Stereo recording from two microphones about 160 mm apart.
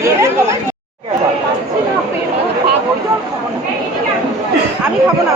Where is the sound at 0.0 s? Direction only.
15° right (ahead or behind).